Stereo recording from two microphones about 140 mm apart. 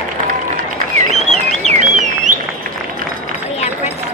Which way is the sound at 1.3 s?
55° right (ahead or behind).